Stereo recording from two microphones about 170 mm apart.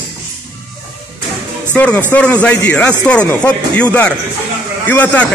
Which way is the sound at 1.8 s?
10° left (ahead or behind).